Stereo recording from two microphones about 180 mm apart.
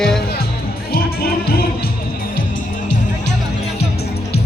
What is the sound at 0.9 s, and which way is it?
Music, 55° left (ahead or behind).